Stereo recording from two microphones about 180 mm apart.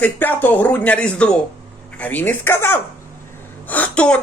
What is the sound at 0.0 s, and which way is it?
A woman's voice, 10° left (ahead or behind).